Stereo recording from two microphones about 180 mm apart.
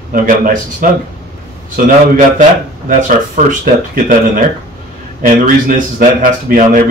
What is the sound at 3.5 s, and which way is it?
Speech, 45° right (ahead or behind).